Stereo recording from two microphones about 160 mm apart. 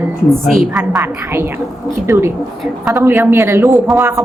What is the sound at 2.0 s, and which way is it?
A woman's voice, 15° right (ahead or behind).